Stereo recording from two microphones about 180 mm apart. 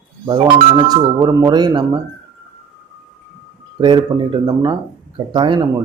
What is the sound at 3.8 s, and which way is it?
Speech, 25° right (ahead or behind).